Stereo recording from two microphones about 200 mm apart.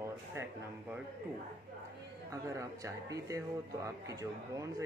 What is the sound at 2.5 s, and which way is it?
Speech, 15° right (ahead or behind).